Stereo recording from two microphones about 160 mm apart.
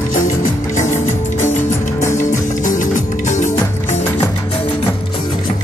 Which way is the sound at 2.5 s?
50° left (ahead or behind).